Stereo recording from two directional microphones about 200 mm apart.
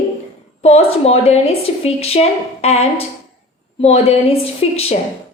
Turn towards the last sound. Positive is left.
turn(degrees=30)  # may be behind; listen again after turning